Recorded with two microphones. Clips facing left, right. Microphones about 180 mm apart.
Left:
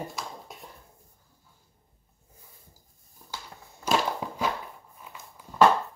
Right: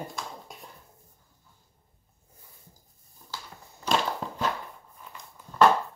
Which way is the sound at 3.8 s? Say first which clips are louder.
Left 1 dB; 10° left (ahead or behind).